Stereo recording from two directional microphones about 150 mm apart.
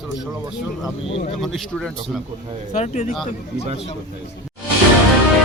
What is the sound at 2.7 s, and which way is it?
Speech, 50° left (ahead or behind).